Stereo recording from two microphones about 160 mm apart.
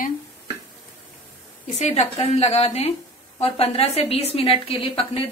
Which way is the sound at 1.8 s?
45° left (ahead or behind).